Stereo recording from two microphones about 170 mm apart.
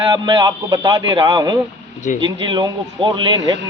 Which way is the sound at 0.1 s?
25° right (ahead or behind).